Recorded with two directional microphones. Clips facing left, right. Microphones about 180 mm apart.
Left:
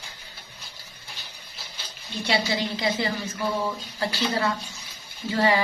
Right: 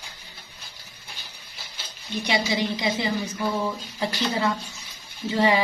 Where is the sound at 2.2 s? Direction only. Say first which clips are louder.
Right 1 dB; 15° right (ahead or behind).